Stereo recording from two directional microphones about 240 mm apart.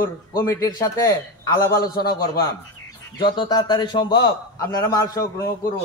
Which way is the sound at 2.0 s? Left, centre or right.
Centre.